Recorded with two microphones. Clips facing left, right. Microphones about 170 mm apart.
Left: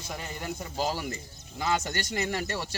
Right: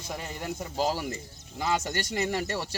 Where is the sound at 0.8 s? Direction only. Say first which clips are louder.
Right 2 dB; 35° right (ahead or behind).